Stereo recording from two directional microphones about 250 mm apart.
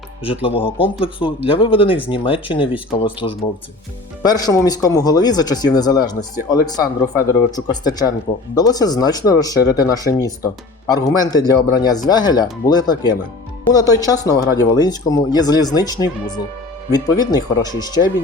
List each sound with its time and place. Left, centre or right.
0.2 s speech: left